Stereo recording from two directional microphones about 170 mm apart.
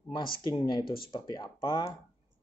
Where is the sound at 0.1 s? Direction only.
30° left (ahead or behind).